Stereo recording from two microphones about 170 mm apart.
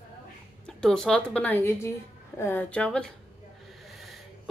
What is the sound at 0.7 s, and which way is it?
A woman's voice, centre (ahead or behind).